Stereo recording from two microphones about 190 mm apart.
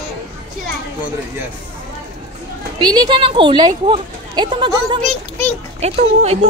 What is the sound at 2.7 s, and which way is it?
Speech, 25° right (ahead or behind).